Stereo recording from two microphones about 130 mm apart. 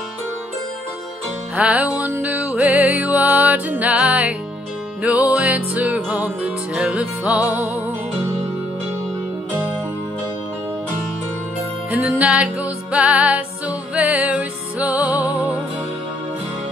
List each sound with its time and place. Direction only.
1.5 s music: 10° right (ahead or behind)
11.9 s music: 10° right (ahead or behind)
15.0 s music: 25° left (ahead or behind)